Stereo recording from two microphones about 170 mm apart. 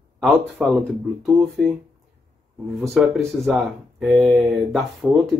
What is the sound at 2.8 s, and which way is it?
Speech, centre (ahead or behind).